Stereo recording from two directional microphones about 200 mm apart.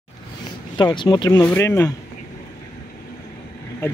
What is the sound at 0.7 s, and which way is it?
Speech, 25° left (ahead or behind).